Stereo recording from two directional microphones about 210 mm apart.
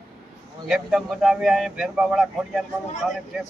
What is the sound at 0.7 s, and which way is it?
Speech, centre (ahead or behind).